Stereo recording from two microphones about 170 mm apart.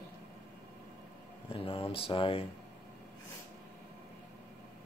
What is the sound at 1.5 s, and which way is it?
Speech, 35° left (ahead or behind).